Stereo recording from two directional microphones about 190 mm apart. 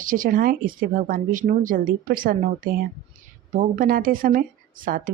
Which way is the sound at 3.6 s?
45° right (ahead or behind).